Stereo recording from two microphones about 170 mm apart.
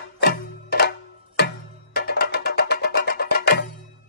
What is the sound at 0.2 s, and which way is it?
Music, 70° left (ahead or behind).